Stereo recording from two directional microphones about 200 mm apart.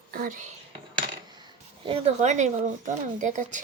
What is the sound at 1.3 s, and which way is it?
Speech, 25° right (ahead or behind).